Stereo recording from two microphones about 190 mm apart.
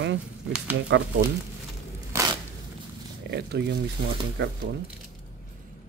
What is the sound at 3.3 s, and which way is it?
Speech, 60° right (ahead or behind).